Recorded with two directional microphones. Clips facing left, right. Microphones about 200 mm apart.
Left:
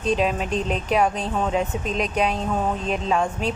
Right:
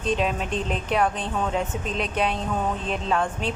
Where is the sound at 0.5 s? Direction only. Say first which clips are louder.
Left 3 dB; 35° left (ahead or behind).